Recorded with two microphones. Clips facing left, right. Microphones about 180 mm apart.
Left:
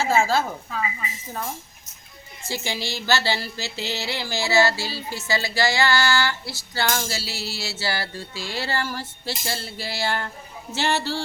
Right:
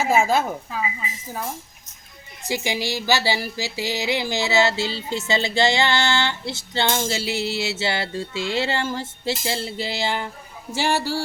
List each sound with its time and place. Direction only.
0.0 s speech: 20° right (ahead or behind)
2.5 s speech: 15° right (ahead or behind)